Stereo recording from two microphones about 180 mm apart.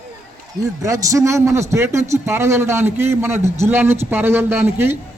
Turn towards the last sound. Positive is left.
turn(degrees=-15)  # may be behind; listen again after turning